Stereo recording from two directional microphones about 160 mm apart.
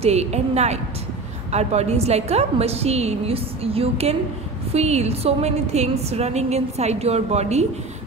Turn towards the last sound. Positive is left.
turn(degrees=-40)  # may be behind; listen again after turning